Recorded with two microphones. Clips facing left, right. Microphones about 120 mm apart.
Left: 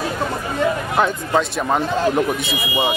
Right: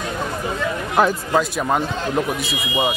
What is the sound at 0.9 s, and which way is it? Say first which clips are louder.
A man's voice: right 4 dB; centre (ahead or behind).